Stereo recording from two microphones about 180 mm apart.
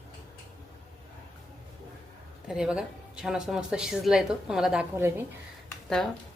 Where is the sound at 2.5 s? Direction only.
5° right (ahead or behind).